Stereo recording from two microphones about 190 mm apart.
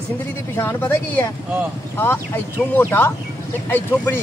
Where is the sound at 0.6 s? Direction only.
10° left (ahead or behind).